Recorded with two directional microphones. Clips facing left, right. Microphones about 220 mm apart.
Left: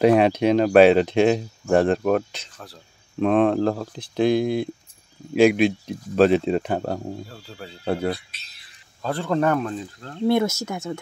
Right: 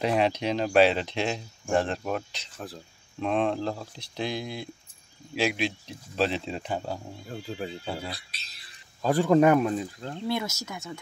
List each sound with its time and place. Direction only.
0.0 s speech: 55° left (ahead or behind)
2.5 s speech: 15° right (ahead or behind)
3.2 s speech: 55° left (ahead or behind)
7.2 s speech: 20° right (ahead or behind)
7.8 s speech: 65° left (ahead or behind)
8.2 s a sound: 40° right (ahead or behind)
9.0 s speech: 10° right (ahead or behind)
10.2 s speech: 50° left (ahead or behind)